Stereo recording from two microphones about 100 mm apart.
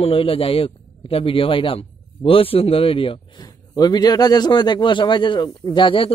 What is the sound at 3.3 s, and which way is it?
A man's voice, 40° left (ahead or behind).